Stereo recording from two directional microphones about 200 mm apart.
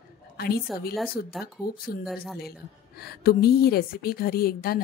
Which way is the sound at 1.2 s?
50° left (ahead or behind).